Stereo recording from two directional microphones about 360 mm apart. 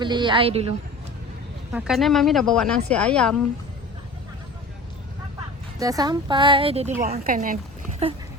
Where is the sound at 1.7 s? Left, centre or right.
Centre.